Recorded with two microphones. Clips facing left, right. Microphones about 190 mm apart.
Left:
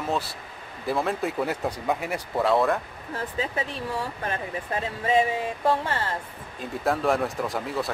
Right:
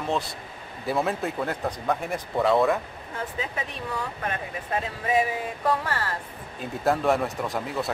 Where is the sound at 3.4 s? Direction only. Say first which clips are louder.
Left 3 dB; 30° left (ahead or behind).